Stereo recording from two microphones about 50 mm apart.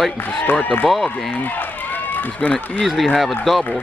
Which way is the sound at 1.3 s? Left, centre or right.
Left.